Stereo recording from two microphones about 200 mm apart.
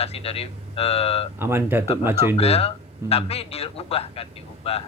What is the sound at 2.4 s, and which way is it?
Speech, 30° left (ahead or behind).